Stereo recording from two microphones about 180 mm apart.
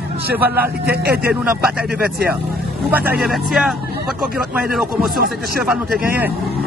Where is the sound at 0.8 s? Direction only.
60° right (ahead or behind).